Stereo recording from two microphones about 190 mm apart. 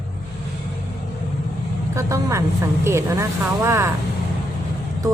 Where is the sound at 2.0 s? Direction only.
15° right (ahead or behind).